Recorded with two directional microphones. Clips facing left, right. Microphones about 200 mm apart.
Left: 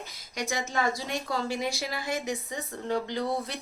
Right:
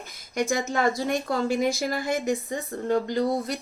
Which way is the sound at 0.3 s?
50° right (ahead or behind).